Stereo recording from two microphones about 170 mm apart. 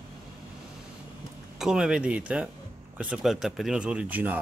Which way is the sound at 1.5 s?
5° right (ahead or behind).